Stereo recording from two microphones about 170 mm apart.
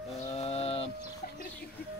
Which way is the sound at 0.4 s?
35° left (ahead or behind).